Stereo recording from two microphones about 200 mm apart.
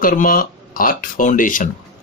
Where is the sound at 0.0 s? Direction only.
45° left (ahead or behind).